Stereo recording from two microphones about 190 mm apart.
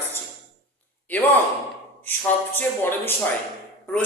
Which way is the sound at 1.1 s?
10° left (ahead or behind).